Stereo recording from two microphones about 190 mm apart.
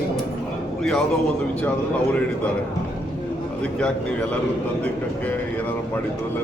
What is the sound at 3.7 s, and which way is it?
Speech, 5° left (ahead or behind).